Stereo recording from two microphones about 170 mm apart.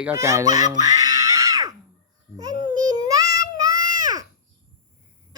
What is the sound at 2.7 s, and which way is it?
Child singing, 20° right (ahead or behind).